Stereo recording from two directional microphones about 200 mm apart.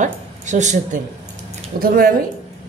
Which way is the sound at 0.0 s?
35° right (ahead or behind).